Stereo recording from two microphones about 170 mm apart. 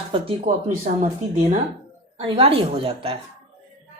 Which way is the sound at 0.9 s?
45° right (ahead or behind).